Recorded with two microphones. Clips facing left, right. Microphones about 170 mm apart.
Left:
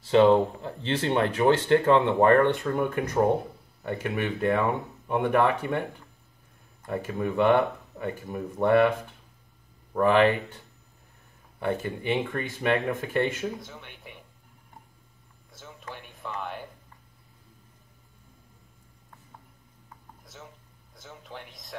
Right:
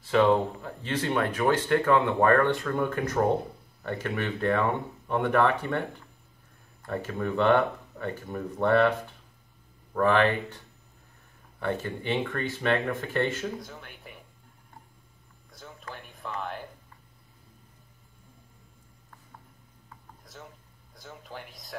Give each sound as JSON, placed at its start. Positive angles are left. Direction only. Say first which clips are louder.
{"t": 0.0, "sound": "speech", "louder": "left 3 dB", "side_deg": 25}
{"t": 9.9, "sound": "speech", "louder": "left 2 dB", "side_deg": 15}
{"t": 11.6, "sound": "speech", "louder": "left 2 dB", "side_deg": 15}
{"t": 13.6, "sound": "speech", "louder": "right 1 dB", "side_deg": 0}
{"t": 15.9, "sound": "a sound", "louder": "even", "side_deg": 0}
{"t": 20.9, "sound": "a sound", "louder": "even", "side_deg": 0}